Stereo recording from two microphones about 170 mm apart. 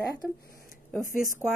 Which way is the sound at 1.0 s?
50° left (ahead or behind).